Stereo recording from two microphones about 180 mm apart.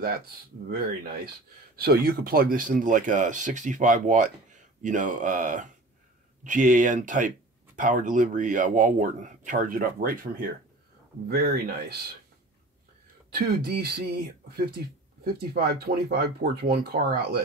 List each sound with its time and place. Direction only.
0.0 s speech: 55° right (ahead or behind)
13.3 s speech: 60° right (ahead or behind)
15.5 s speech: 60° right (ahead or behind)